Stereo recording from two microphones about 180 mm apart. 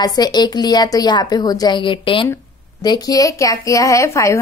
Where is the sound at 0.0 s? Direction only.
20° left (ahead or behind).